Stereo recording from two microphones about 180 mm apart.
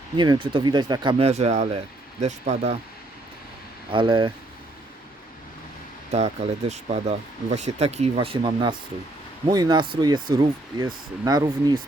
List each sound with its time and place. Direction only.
0.2 s speech: 25° right (ahead or behind)
1.3 s speech: 40° right (ahead or behind)
3.9 s speech: 25° right (ahead or behind)
6.1 s speech: 35° right (ahead or behind)